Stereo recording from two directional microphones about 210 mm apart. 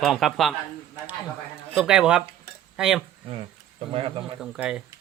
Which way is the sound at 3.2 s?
25° right (ahead or behind).